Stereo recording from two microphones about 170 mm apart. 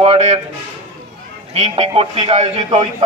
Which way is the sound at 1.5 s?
35° right (ahead or behind).